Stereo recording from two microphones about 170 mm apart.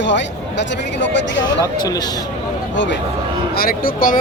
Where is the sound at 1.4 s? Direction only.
25° left (ahead or behind).